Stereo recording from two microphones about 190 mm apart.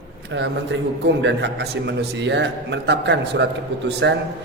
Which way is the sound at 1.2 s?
65° right (ahead or behind).